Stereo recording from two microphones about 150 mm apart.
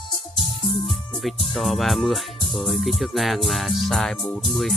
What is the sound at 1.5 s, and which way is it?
Speech, centre (ahead or behind).